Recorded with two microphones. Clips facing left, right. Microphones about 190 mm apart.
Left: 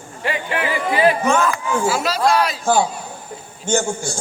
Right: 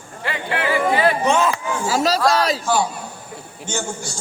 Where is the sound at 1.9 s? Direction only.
35° right (ahead or behind).